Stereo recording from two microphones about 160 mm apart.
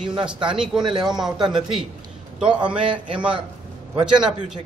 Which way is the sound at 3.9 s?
5° right (ahead or behind).